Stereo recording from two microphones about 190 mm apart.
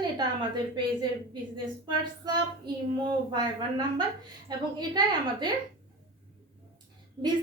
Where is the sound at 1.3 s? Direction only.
25° right (ahead or behind).